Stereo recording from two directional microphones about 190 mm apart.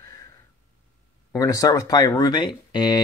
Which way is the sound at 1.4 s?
15° left (ahead or behind).